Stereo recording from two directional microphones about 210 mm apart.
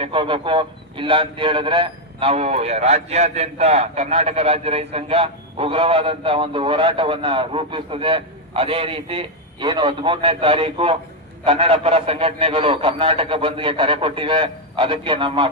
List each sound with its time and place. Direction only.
0.0 s a man's voice: 25° right (ahead or behind)